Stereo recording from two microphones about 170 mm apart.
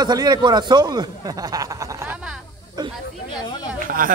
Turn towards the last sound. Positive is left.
turn(degrees=-55)  # may be behind; listen again after turning